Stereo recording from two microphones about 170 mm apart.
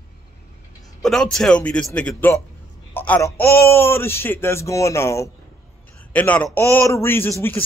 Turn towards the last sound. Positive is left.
turn(degrees=10)  # may be behind; listen again after turning